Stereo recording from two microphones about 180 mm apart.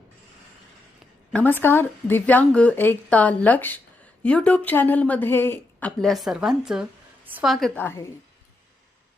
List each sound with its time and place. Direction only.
1.3 s a woman's voice: 10° left (ahead or behind)
7.8 s speech: 15° left (ahead or behind)